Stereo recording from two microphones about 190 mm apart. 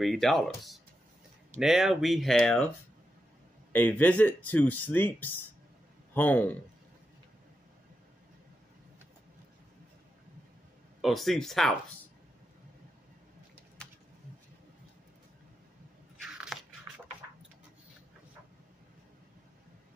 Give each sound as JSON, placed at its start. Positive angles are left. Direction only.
{"t": 0.0, "sound": "speech", "side_deg": 0}
{"t": 3.7, "sound": "speech", "side_deg": 10}
{"t": 11.0, "sound": "speech", "side_deg": 0}
{"t": 16.3, "sound": "a sound", "side_deg": -5}